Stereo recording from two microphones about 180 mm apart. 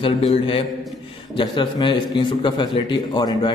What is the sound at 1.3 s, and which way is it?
A man's voice, 25° left (ahead or behind).